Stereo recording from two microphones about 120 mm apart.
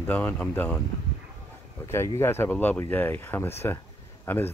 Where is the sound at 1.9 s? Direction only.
20° left (ahead or behind).